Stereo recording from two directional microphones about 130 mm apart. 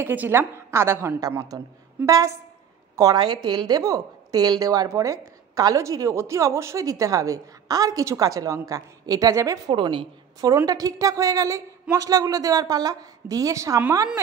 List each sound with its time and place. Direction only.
0.0 s a woman's voice: 15° right (ahead or behind)
9.8 s a woman's voice: 40° right (ahead or behind)
10.5 s a woman's voice: 25° right (ahead or behind)